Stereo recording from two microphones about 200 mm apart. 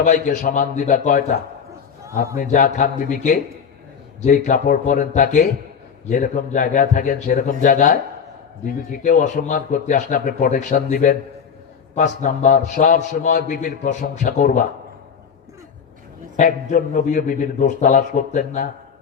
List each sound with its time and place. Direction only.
0.0 s a man's voice: 40° left (ahead or behind)
16.4 s speech: 40° left (ahead or behind)